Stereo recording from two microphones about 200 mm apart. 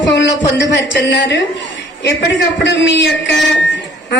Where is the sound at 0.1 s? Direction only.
60° left (ahead or behind).